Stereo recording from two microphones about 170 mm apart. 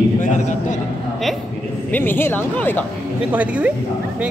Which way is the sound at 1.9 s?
10° left (ahead or behind).